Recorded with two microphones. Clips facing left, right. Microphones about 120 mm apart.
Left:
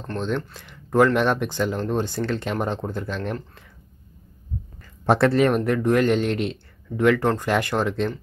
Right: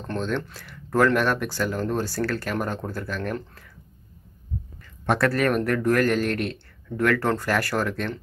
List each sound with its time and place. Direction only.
0.6 s speech: 15° left (ahead or behind)
5.0 s speech: 25° left (ahead or behind)